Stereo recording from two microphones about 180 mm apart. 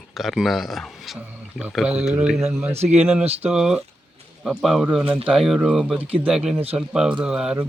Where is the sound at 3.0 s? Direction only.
Centre (ahead or behind).